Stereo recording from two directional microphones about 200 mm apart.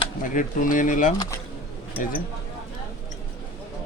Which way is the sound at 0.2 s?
40° left (ahead or behind).